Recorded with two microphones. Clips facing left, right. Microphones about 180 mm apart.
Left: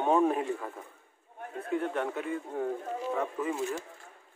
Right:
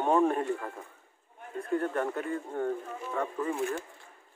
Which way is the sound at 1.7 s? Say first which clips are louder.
Right 1 dB; centre (ahead or behind).